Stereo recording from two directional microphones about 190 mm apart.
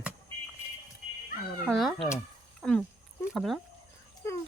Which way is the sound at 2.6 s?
5° left (ahead or behind).